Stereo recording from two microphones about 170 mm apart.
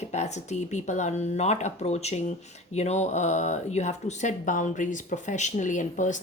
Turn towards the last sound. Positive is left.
turn(degrees=45)  # may be behind; listen again after turning